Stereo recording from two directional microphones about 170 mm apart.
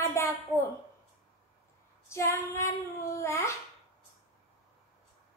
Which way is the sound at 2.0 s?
15° left (ahead or behind).